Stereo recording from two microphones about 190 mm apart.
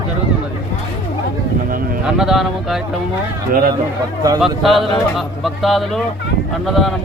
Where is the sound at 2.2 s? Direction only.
Centre (ahead or behind).